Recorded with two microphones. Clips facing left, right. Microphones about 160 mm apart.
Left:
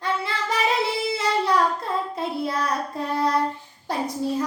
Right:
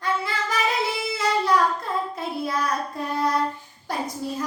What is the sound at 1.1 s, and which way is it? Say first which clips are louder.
Child singing: right 1 dB; 30° left (ahead or behind).